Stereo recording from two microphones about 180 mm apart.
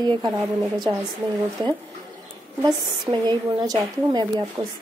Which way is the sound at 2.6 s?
20° right (ahead or behind).